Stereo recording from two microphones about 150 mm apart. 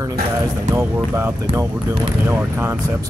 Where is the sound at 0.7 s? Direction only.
15° right (ahead or behind).